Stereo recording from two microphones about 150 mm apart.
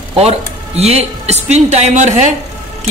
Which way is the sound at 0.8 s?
45° right (ahead or behind).